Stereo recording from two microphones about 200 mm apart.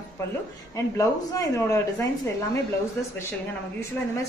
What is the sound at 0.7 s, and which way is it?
A woman's voice, 15° left (ahead or behind).